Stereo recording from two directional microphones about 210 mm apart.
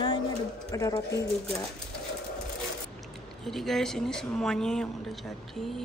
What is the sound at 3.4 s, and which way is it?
Speech, centre (ahead or behind).